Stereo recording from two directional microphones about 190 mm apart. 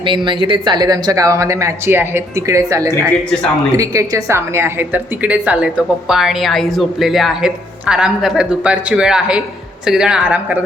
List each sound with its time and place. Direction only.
0.0 s a woman's voice: 25° right (ahead or behind); by 10.6 s 10° right (ahead or behind)